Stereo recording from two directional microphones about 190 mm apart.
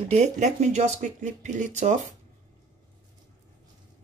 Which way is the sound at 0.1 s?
35° right (ahead or behind).